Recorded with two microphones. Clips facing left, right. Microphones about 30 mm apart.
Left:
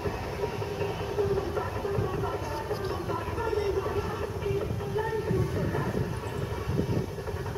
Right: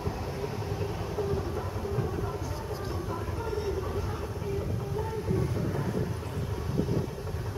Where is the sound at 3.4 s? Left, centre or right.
Left.